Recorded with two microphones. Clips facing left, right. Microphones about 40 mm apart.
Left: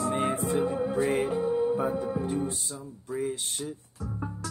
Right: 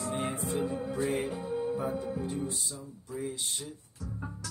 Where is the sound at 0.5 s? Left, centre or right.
Left.